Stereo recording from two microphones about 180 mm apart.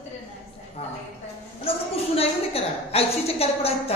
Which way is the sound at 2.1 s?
35° left (ahead or behind).